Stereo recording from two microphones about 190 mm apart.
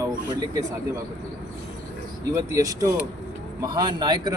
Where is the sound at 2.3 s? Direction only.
15° right (ahead or behind).